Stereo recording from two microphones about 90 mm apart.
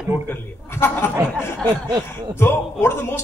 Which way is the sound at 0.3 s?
25° left (ahead or behind).